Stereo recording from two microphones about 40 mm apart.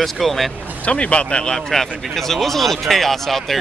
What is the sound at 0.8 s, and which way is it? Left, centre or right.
Speech, left.